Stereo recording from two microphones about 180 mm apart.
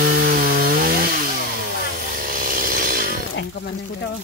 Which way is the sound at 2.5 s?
50° right (ahead or behind).